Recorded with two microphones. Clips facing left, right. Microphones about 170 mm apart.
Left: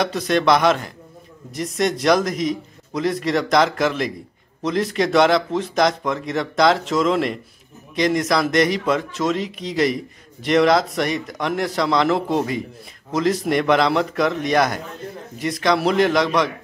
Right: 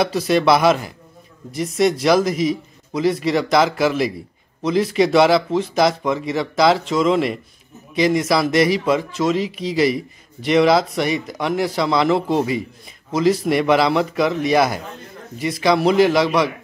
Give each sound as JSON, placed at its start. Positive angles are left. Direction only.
{"t": 0.0, "sound": "speech", "side_deg": -5}